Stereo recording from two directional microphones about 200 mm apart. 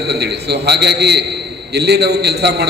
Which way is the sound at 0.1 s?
55° right (ahead or behind).